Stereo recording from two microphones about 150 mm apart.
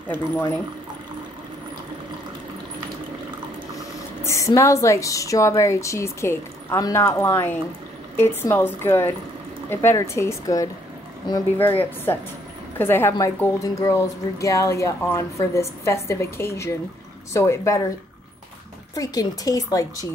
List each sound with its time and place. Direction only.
0.1 s speech: 10° left (ahead or behind)
4.2 s speech: 20° left (ahead or behind)
11.8 s speech: 15° left (ahead or behind)
18.9 s speech: 25° left (ahead or behind)